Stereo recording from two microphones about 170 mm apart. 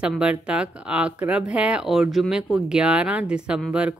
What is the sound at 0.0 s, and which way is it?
Speech, 5° right (ahead or behind).